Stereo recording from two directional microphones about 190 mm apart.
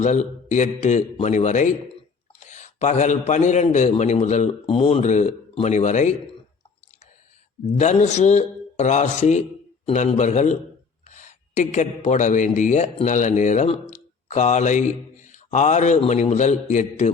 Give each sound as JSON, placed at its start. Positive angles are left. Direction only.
{"t": 0.0, "sound": "a man's voice", "side_deg": 40}
{"t": 7.8, "sound": "a man's voice", "side_deg": 40}